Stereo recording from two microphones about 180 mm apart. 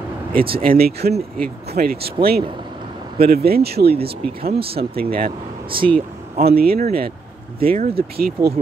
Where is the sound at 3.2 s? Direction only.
60° right (ahead or behind).